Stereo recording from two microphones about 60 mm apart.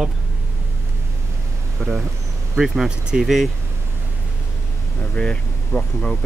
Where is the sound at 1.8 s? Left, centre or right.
Centre.